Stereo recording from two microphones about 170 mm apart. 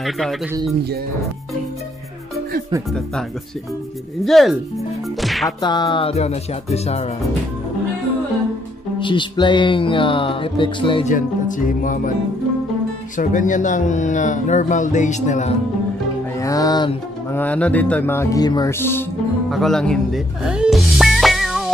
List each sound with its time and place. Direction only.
0.0 s speech: centre (ahead or behind)
4.2 s speech: centre (ahead or behind)
5.6 s music: 25° left (ahead or behind)
9.0 s speech: 30° left (ahead or behind)
11.1 s speech: 50° left (ahead or behind)
13.2 s speech: 50° left (ahead or behind)
16.3 s speech: 20° left (ahead or behind)
17.3 s music: 10° left (ahead or behind)
19.5 s music: centre (ahead or behind)